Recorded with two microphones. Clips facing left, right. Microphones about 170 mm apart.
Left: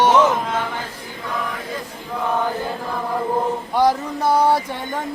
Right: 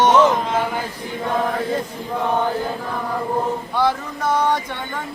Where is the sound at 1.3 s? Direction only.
45° right (ahead or behind).